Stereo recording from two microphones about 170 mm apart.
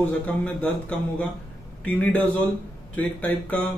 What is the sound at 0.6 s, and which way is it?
A man's voice, 5° left (ahead or behind).